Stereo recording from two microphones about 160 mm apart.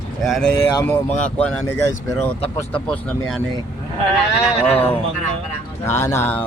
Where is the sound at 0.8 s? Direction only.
10° left (ahead or behind).